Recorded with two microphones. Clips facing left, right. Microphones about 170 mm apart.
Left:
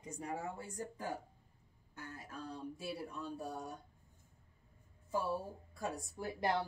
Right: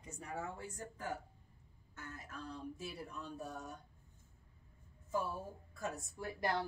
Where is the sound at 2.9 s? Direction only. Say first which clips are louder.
Left 4 dB; 35° left (ahead or behind).